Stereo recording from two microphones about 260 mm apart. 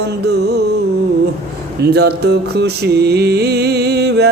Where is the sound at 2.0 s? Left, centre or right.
Right.